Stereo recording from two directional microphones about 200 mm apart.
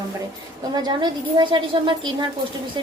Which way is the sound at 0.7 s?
20° right (ahead or behind).